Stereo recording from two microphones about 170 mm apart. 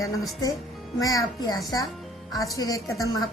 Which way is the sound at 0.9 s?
20° left (ahead or behind).